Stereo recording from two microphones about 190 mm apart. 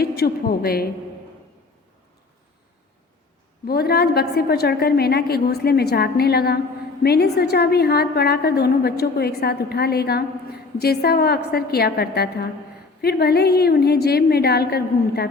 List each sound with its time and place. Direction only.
0.0 s a woman's voice: 55° left (ahead or behind)
3.7 s a woman's voice: 55° left (ahead or behind)